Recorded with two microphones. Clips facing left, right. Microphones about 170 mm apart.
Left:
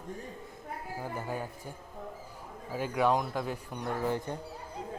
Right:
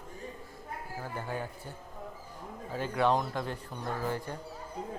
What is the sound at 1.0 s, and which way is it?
Speech, 10° left (ahead or behind).